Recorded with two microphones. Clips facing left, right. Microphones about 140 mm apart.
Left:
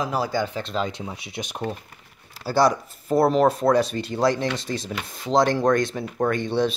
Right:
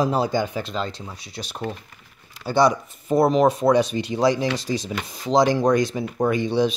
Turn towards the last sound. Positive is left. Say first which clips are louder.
# right 2 dB
turn(degrees=0)  # may be behind; listen again after turning